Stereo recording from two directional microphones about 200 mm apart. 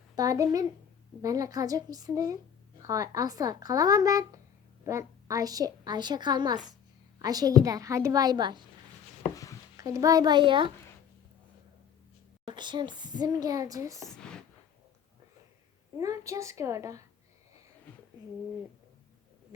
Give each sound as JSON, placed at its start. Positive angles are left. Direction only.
{"t": 0.2, "sound": "a woman's voice", "side_deg": -15}
{"t": 9.3, "sound": "chopping", "side_deg": 15}
{"t": 9.7, "sound": "a woman's voice", "side_deg": -15}
{"t": 12.5, "sound": "a woman's voice", "side_deg": -20}
{"t": 14.1, "sound": "a sound", "side_deg": 5}
{"t": 16.0, "sound": "speech", "side_deg": -15}